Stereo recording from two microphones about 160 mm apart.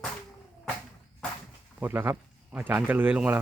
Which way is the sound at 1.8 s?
10° right (ahead or behind).